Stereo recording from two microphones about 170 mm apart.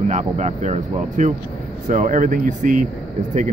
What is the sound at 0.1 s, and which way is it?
Speech, 45° right (ahead or behind).